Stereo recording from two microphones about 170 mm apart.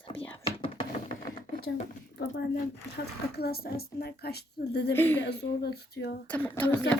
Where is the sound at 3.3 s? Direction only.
65° left (ahead or behind).